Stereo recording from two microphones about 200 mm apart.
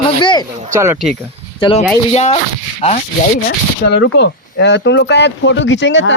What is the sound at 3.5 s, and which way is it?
Speech, 60° left (ahead or behind).